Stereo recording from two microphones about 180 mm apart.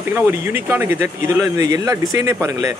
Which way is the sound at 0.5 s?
10° right (ahead or behind).